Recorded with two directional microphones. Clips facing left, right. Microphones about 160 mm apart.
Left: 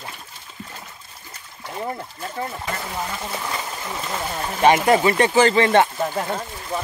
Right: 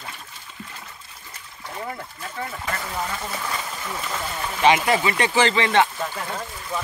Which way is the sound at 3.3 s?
20° left (ahead or behind).